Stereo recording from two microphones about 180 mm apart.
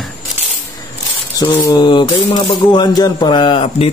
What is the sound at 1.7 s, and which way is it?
A man's voice, 25° left (ahead or behind).